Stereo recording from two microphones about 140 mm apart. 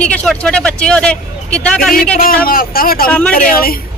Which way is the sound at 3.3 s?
90° left.